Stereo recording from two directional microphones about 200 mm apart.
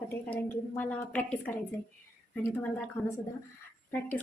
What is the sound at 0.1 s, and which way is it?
A woman's voice, 10° left (ahead or behind).